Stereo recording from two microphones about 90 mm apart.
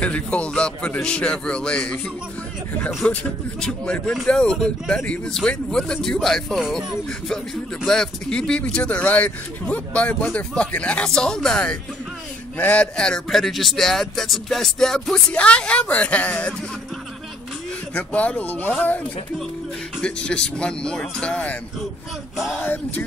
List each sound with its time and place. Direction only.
0.0 s speech: 15° left (ahead or behind)
3.0 s speech: 15° left (ahead or behind)
7.8 s speech: 5° left (ahead or behind)
17.9 s speech: 15° left (ahead or behind)
20.0 s speech: 10° left (ahead or behind)
22.4 s speech: 5° right (ahead or behind)